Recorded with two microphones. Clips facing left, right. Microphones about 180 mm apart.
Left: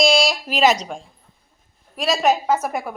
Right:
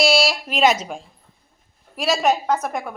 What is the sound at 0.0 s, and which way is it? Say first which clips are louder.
A woman's voice: left 1 dB; 5° right (ahead or behind).